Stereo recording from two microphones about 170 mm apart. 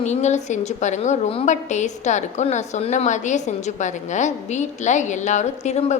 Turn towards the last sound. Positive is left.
turn(degrees=40)  # may be behind; listen again after turning